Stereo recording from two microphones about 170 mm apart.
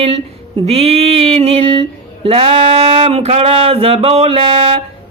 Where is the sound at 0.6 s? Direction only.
35° right (ahead or behind).